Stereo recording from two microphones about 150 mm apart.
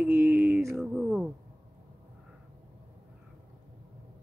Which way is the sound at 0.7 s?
Centre (ahead or behind).